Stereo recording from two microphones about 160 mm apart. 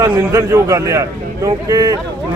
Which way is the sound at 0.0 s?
15° right (ahead or behind).